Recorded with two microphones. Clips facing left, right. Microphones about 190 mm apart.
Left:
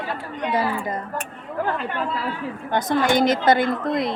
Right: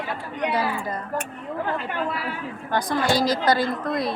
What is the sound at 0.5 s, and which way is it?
Speech, 20° left (ahead or behind).